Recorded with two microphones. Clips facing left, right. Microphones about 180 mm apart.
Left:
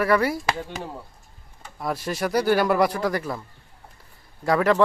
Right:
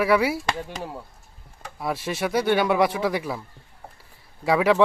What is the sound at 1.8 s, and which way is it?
Speech, centre (ahead or behind).